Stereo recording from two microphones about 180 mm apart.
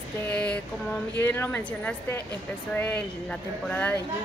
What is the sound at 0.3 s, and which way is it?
Speech, 5° left (ahead or behind).